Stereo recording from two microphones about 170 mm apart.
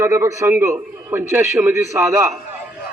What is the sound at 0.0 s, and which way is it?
A man's voice, 15° right (ahead or behind).